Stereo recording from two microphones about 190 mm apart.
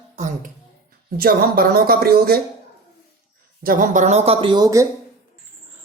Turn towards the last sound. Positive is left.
turn(degrees=-15)  # may be behind; listen again after turning